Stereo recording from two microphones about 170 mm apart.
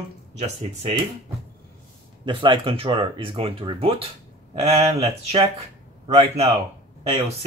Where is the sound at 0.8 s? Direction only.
30° right (ahead or behind).